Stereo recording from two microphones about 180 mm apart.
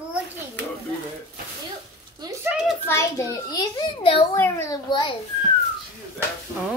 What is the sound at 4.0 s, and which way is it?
Speech, 30° left (ahead or behind).